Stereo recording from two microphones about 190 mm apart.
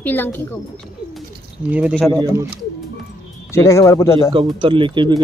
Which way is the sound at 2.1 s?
20° right (ahead or behind).